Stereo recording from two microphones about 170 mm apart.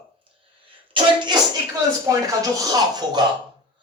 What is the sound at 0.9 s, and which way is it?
Speech, 25° right (ahead or behind).